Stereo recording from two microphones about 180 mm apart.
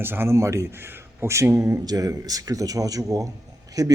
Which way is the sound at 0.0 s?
10° right (ahead or behind).